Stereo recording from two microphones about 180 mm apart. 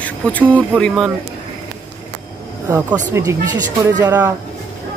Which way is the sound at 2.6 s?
10° right (ahead or behind).